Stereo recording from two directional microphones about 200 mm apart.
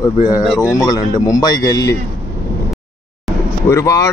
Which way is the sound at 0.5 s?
15° left (ahead or behind).